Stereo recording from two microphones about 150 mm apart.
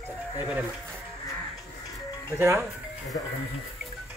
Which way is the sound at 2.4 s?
20° right (ahead or behind).